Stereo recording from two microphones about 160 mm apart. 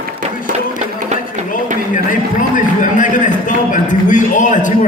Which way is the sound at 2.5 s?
55° left (ahead or behind).